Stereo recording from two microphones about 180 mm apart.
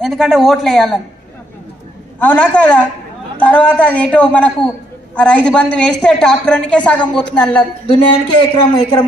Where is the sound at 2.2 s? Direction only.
10° left (ahead or behind).